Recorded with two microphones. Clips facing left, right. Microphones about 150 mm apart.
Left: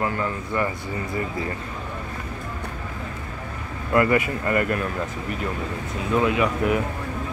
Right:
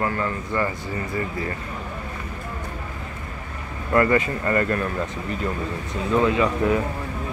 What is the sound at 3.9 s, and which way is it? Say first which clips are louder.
Speech: right 1 dB; 15° left (ahead or behind).